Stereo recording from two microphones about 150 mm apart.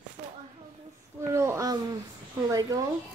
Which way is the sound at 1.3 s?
20° right (ahead or behind).